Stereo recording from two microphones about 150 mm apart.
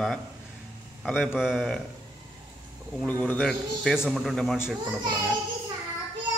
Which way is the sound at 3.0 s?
10° left (ahead or behind).